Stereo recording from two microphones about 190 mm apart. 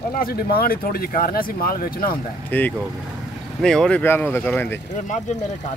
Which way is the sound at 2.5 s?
10° left (ahead or behind).